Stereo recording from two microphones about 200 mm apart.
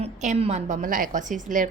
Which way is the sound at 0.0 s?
35° right (ahead or behind).